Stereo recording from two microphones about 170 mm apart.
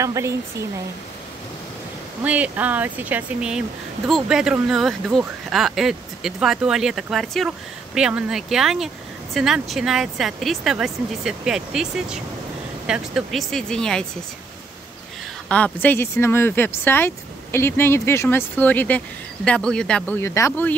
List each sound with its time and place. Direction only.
0.0 s speech: 20° right (ahead or behind)
2.2 s speech: 10° right (ahead or behind)
15.4 s speech: 10° left (ahead or behind)